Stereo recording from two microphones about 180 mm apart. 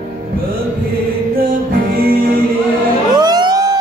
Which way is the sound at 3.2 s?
25° right (ahead or behind).